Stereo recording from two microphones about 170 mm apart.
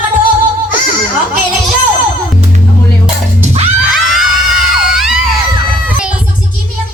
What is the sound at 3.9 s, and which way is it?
Screaming, centre (ahead or behind).